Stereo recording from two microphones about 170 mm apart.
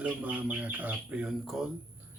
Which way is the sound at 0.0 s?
10° right (ahead or behind).